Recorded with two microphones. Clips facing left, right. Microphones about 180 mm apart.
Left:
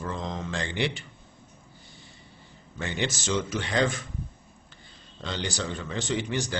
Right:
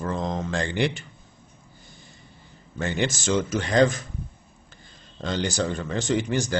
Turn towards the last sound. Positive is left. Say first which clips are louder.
# right 5 dB
turn(degrees=-45)  # may be behind; listen again after turning